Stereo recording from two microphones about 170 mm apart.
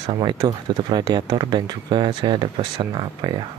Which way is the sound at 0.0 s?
25° right (ahead or behind).